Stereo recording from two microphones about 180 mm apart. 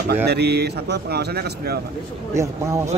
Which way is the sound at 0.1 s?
65° right (ahead or behind).